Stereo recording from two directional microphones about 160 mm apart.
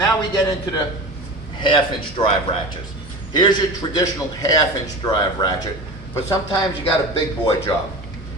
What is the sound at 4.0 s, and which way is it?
A man's voice, 25° left (ahead or behind).